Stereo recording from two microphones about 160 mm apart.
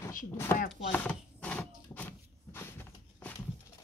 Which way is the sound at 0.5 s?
15° left (ahead or behind).